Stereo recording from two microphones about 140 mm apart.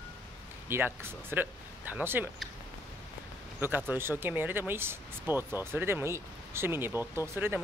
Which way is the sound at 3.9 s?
15° right (ahead or behind).